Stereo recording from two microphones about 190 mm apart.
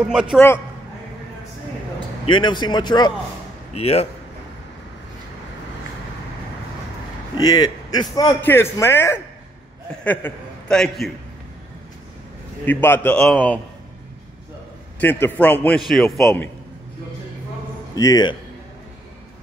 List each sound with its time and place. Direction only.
0.0 s a man's voice: 5° right (ahead or behind)
2.2 s a man's voice: 25° left (ahead or behind)
7.3 s a man's voice: 20° left (ahead or behind); by 11.1 s 5° left (ahead or behind)
12.6 s a man's voice: 10° left (ahead or behind)
15.0 s a man's voice: 10° left (ahead or behind)
17.9 s a man's voice: 20° left (ahead or behind)